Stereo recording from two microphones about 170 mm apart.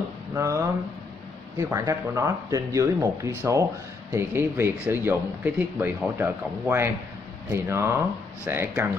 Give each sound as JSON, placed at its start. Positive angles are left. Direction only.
{"t": 0.3, "sound": "speech", "side_deg": -15}